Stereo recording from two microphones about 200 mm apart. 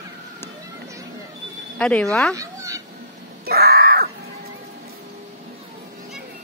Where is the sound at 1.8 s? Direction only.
5° left (ahead or behind).